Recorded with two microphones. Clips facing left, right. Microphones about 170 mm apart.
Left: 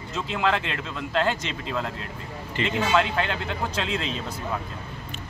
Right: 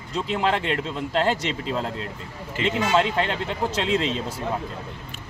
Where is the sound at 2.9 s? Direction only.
30° right (ahead or behind).